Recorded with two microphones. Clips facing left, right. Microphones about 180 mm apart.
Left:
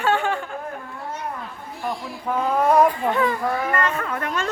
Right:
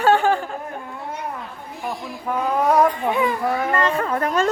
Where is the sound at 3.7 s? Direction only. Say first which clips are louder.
Right 4 dB; 35° right (ahead or behind).